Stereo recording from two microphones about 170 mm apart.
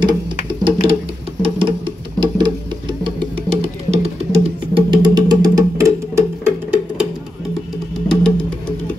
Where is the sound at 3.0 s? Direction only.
35° right (ahead or behind).